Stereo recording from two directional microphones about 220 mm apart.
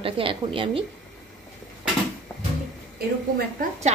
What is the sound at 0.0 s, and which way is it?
Speech, 25° right (ahead or behind).